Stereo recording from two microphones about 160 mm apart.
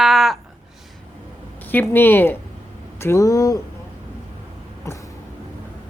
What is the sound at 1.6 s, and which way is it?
Speech, 10° left (ahead or behind).